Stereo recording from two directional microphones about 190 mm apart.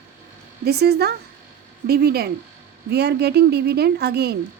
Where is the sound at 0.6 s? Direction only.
55° right (ahead or behind).